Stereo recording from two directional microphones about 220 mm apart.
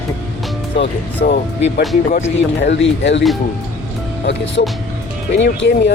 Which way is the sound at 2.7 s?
55° left (ahead or behind).